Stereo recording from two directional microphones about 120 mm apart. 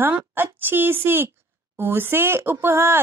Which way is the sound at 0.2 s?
15° right (ahead or behind).